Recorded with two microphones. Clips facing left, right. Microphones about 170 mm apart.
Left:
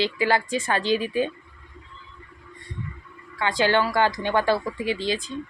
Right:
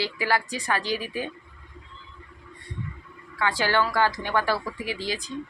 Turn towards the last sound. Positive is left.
turn(degrees=25)  # may be behind; listen again after turning